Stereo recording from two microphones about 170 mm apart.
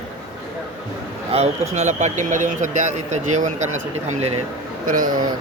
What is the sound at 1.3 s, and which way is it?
A man's voice, 40° right (ahead or behind).